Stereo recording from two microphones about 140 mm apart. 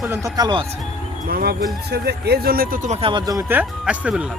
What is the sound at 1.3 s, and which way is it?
Speech, 90° right.